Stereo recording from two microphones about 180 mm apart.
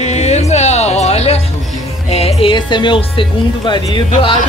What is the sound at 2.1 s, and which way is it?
Speech, 35° left (ahead or behind).